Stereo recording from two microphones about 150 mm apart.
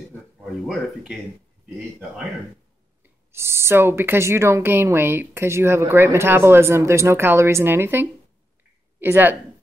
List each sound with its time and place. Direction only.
0.7 s speech: centre (ahead or behind)
3.0 s speech: 15° right (ahead or behind)